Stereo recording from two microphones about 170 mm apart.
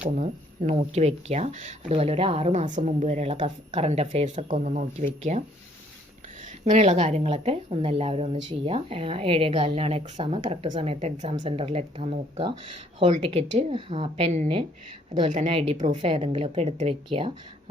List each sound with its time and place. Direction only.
0.2 s speech: 40° right (ahead or behind)
13.1 s speech: 40° right (ahead or behind)